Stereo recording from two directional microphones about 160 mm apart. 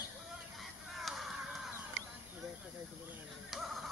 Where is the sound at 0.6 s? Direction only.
Centre (ahead or behind).